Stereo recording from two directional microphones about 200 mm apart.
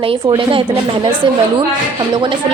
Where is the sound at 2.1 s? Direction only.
25° right (ahead or behind).